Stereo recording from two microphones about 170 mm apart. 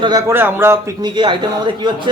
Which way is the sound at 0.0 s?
20° right (ahead or behind).